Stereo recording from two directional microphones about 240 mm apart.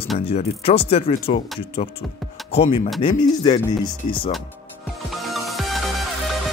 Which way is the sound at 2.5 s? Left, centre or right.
Left.